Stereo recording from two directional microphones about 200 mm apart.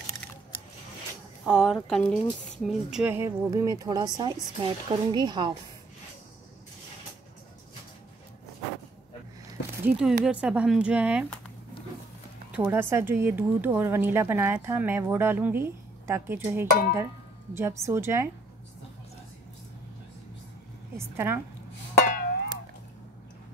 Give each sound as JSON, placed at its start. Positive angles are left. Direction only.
{"t": 1.4, "sound": "a woman's voice", "side_deg": -5}
{"t": 9.8, "sound": "speech", "side_deg": -5}
{"t": 12.4, "sound": "speech", "side_deg": -10}
{"t": 21.0, "sound": "speech", "side_deg": -10}
{"t": 22.0, "sound": "music", "side_deg": 45}